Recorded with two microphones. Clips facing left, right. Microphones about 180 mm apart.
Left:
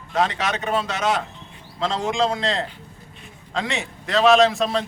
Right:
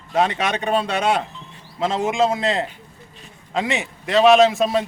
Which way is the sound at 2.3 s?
15° right (ahead or behind).